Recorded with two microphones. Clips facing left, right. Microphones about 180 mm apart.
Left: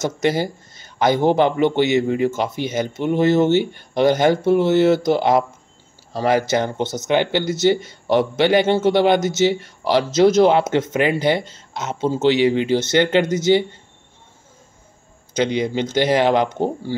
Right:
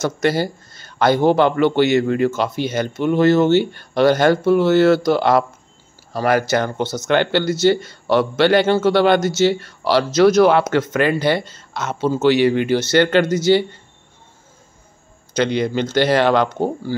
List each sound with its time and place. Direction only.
0.0 s a man's voice: 20° left (ahead or behind)
15.3 s speech: 15° left (ahead or behind)